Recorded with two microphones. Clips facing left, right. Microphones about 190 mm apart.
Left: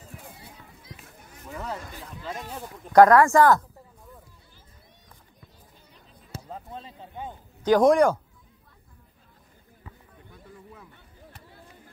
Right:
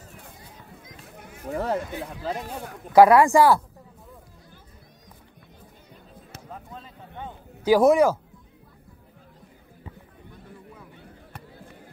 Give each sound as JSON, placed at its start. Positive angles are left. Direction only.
{"t": 1.6, "sound": "speech", "side_deg": -60}
{"t": 2.9, "sound": "speech", "side_deg": -10}
{"t": 6.3, "sound": "basketball bounce", "side_deg": 30}
{"t": 7.6, "sound": "speech", "side_deg": -5}